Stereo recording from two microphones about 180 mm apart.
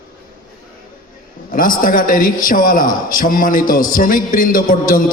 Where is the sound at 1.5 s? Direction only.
50° left (ahead or behind).